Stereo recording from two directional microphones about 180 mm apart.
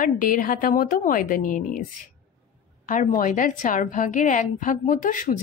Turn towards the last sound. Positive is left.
turn(degrees=45)  # may be behind; listen again after turning